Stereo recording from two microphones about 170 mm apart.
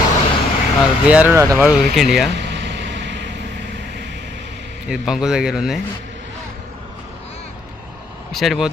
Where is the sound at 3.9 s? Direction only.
85° right.